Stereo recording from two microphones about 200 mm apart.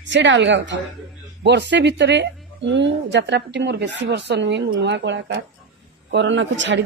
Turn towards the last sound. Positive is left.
turn(degrees=-65)  # may be behind; listen again after turning